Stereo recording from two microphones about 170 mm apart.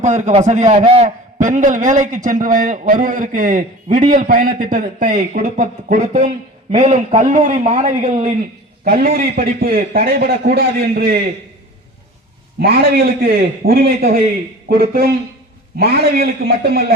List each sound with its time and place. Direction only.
0.0 s a man's voice: 45° right (ahead or behind); by 11.2 s 65° right (ahead or behind)
12.5 s a man's voice: 65° right (ahead or behind)